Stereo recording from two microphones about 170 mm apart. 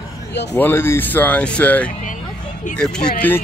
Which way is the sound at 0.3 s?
90° left.